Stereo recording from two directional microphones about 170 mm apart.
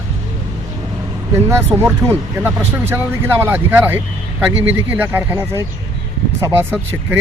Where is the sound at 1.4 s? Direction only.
15° right (ahead or behind).